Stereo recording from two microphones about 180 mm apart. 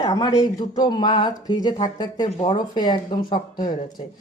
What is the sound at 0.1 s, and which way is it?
A woman's voice, 20° left (ahead or behind).